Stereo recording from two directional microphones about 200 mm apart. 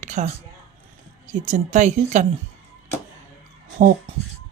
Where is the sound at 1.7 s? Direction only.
35° right (ahead or behind).